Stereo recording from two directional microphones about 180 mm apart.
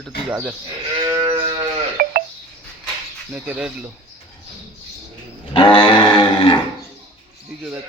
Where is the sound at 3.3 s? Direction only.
5° right (ahead or behind).